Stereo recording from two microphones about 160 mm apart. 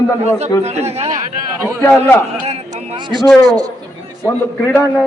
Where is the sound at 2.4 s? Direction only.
40° right (ahead or behind).